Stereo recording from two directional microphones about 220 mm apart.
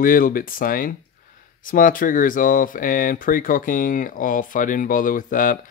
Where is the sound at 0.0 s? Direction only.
40° left (ahead or behind).